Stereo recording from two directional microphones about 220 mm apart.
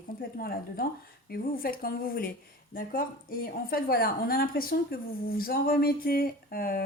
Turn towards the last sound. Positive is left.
turn(degrees=40)  # may be behind; listen again after turning